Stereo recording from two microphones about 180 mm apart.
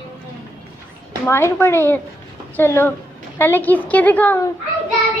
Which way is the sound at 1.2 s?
15° left (ahead or behind).